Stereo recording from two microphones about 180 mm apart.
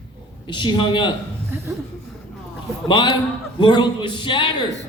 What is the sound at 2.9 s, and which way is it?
A man's voice, 25° left (ahead or behind).